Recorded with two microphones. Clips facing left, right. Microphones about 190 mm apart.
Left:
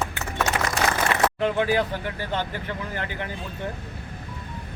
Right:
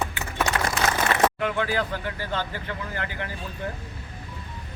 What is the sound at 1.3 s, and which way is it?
Speech, 20° left (ahead or behind).